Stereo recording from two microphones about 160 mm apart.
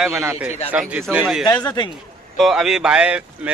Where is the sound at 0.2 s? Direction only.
15° right (ahead or behind).